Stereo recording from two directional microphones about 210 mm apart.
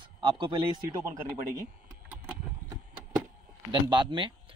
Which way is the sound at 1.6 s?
5° right (ahead or behind).